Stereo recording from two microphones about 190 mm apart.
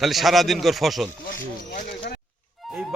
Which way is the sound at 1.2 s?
45° left (ahead or behind).